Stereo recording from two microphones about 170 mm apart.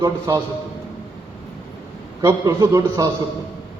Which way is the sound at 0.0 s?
20° right (ahead or behind).